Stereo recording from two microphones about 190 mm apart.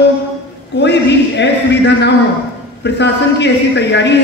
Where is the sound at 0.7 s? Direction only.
65° left (ahead or behind).